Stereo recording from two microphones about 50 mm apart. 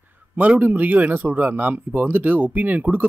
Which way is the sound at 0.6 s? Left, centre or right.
Right.